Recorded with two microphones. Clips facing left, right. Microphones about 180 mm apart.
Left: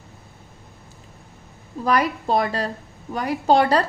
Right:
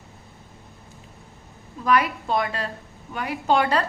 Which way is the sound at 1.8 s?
35° left (ahead or behind).